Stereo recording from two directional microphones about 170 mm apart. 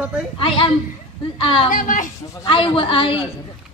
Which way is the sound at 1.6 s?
55° left (ahead or behind).